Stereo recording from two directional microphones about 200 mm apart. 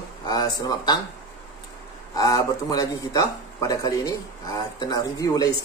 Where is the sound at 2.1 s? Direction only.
15° left (ahead or behind).